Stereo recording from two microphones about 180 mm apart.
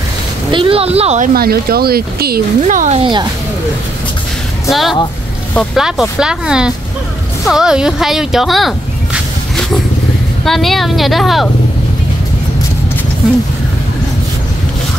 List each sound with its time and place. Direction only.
0.5 s speech: 30° right (ahead or behind)
1.3 s speech: 60° right (ahead or behind)
2.6 s speech: 40° right (ahead or behind)
3.0 s speech: 25° right (ahead or behind)
4.6 s speech: centre (ahead or behind)
10.4 s speech: centre (ahead or behind)